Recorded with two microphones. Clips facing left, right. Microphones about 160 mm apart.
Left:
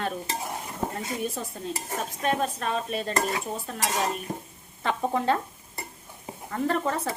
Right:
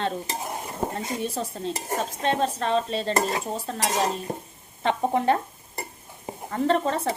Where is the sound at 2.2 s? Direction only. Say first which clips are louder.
Right 2 dB; 30° right (ahead or behind).